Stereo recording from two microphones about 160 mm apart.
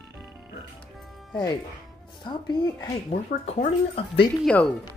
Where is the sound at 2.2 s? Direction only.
30° left (ahead or behind).